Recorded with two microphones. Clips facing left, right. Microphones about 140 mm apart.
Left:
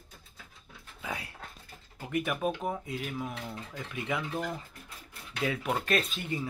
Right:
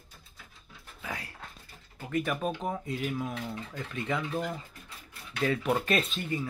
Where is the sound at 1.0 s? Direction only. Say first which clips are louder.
Left 1 dB; 15° left (ahead or behind).